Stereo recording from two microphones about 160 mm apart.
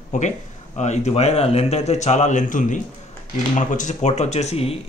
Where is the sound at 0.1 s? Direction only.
45° left (ahead or behind).